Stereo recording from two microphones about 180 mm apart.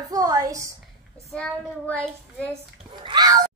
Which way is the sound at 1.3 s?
5° left (ahead or behind).